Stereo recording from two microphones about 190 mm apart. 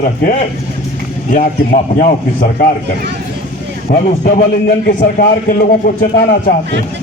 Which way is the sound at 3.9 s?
50° left (ahead or behind).